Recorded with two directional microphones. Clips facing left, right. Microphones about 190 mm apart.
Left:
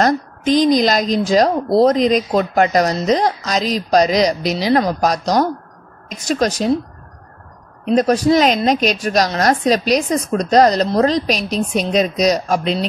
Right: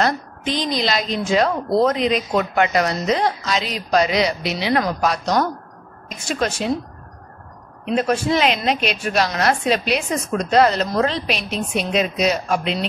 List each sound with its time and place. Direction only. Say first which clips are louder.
0.0 s a woman's voice: left 5 dB; 45° left (ahead or behind)
7.8 s a woman's voice: left 6 dB; 40° left (ahead or behind)